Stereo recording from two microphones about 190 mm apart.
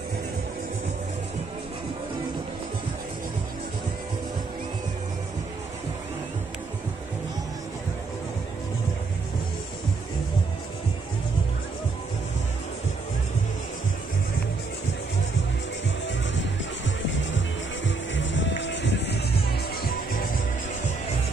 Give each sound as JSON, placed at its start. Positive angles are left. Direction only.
{"t": 17.8, "sound": "music", "side_deg": 75}